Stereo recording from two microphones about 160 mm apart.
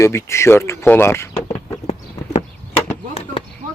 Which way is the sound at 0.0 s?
15° left (ahead or behind).